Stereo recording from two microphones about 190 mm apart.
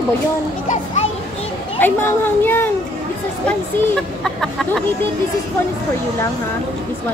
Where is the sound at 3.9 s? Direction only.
Centre (ahead or behind).